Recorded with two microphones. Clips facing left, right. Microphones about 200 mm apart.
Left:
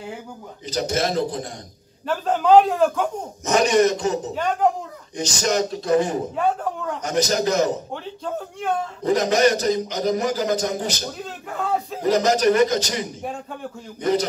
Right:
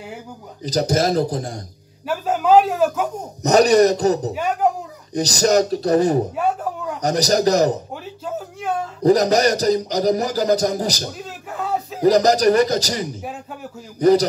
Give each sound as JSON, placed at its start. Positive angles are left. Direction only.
{"t": 0.7, "sound": "a man's voice", "side_deg": -35}
{"t": 2.0, "sound": "a man's voice", "side_deg": -5}
{"t": 3.4, "sound": "a man's voice", "side_deg": -35}
{"t": 4.3, "sound": "a man's voice", "side_deg": -10}
{"t": 5.1, "sound": "a man's voice", "side_deg": -35}
{"t": 6.3, "sound": "a sound", "side_deg": -5}
{"t": 7.0, "sound": "a man's voice", "side_deg": -35}
{"t": 7.9, "sound": "a sound", "side_deg": -5}
{"t": 9.0, "sound": "a man's voice", "side_deg": -35}
{"t": 11.2, "sound": "a sound", "side_deg": -5}
{"t": 12.0, "sound": "a man's voice", "side_deg": -35}
{"t": 13.2, "sound": "speech", "side_deg": -5}
{"t": 13.9, "sound": "a man's voice", "side_deg": -35}